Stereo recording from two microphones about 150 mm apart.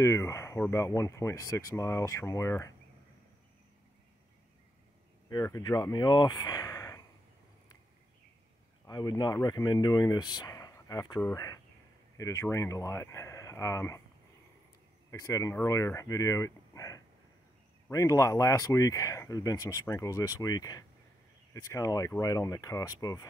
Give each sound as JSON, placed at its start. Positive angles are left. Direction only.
{"t": 0.0, "sound": "speech", "side_deg": 20}
{"t": 5.3, "sound": "speech", "side_deg": 25}
{"t": 8.8, "sound": "speech", "side_deg": 25}
{"t": 15.0, "sound": "speech", "side_deg": 20}